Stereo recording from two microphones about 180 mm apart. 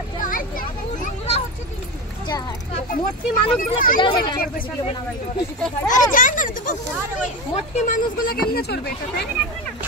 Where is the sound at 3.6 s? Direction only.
50° left (ahead or behind).